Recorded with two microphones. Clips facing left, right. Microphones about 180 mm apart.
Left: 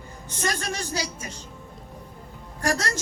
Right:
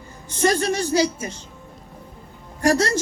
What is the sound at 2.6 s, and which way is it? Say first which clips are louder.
Speech: right 8 dB; 30° right (ahead or behind).